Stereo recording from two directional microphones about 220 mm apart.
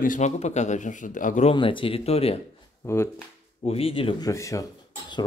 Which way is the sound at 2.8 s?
10° left (ahead or behind).